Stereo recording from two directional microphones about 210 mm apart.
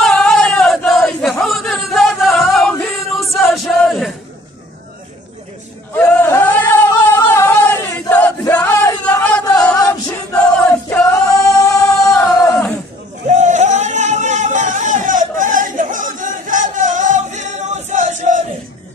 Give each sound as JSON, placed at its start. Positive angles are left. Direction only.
{"t": 0.0, "sound": "battle cry", "side_deg": 5}
{"t": 5.9, "sound": "singing", "side_deg": 10}
{"t": 13.3, "sound": "a sound", "side_deg": -35}